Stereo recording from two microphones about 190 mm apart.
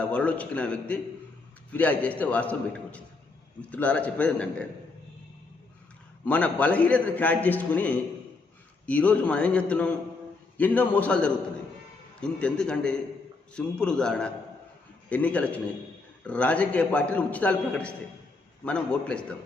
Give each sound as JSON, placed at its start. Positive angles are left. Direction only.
{"t": 0.0, "sound": "a man's voice", "side_deg": 5}
{"t": 6.2, "sound": "a man's voice", "side_deg": 5}